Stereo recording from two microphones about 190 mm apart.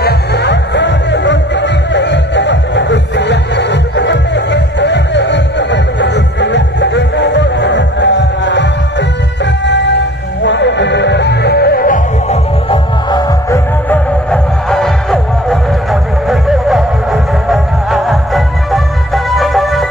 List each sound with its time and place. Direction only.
0.0 s music: 60° left (ahead or behind)
9.7 s music: 65° left (ahead or behind); by 12.0 s 50° left (ahead or behind)
12.3 s music: 30° left (ahead or behind)
13.5 s music: 10° left (ahead or behind)